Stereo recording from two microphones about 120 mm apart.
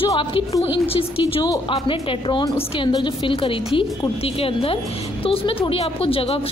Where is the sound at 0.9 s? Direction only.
50° left (ahead or behind).